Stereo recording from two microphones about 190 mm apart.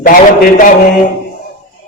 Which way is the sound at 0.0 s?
45° left (ahead or behind).